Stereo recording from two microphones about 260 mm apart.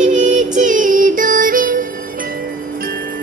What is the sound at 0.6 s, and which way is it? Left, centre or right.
Child singing, right.